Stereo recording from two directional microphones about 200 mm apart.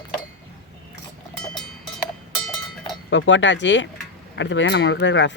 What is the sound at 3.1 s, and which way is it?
Speech, 65° left (ahead or behind).